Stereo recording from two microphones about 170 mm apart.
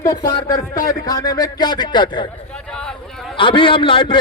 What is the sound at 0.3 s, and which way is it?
A man's voice, 25° left (ahead or behind).